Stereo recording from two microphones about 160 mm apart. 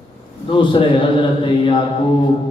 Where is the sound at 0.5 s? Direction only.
30° left (ahead or behind).